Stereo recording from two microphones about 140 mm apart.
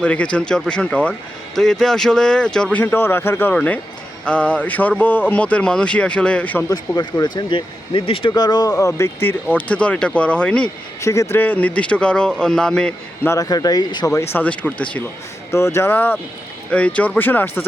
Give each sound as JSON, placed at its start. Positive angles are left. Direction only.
{"t": 0.0, "sound": "speech", "side_deg": 10}
{"t": 6.7, "sound": "speech", "side_deg": 30}
{"t": 8.3, "sound": "speech", "side_deg": 30}
{"t": 11.0, "sound": "speech", "side_deg": 20}
{"t": 13.2, "sound": "speech", "side_deg": 25}
{"t": 14.3, "sound": "speech", "side_deg": 10}